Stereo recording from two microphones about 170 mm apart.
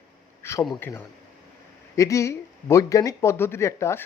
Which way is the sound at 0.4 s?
15° left (ahead or behind).